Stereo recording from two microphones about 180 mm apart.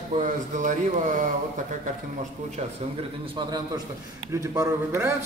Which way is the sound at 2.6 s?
40° right (ahead or behind).